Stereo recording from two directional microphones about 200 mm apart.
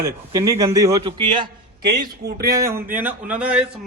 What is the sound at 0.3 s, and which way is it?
A man's voice, 15° right (ahead or behind).